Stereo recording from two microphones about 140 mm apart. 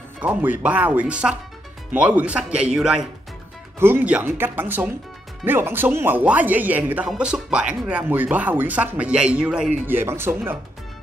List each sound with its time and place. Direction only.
0.2 s speech: 10° right (ahead or behind)